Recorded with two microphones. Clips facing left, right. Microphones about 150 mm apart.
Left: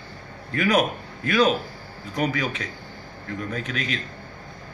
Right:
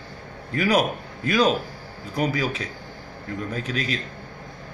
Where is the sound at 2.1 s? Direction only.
35° right (ahead or behind).